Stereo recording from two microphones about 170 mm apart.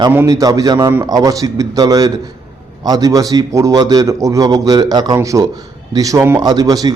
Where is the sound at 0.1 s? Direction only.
15° right (ahead or behind).